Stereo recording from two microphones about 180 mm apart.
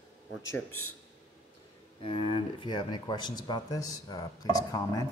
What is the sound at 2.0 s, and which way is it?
Speech, 25° left (ahead or behind).